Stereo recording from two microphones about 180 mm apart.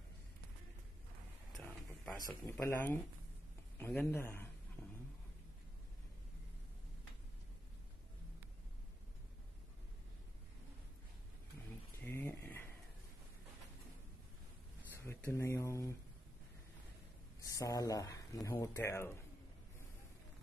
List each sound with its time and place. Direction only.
2.1 s speech: 20° left (ahead or behind)
12.0 s dog: 10° left (ahead or behind)
15.0 s speech: 15° left (ahead or behind)
17.5 s speech: 20° left (ahead or behind)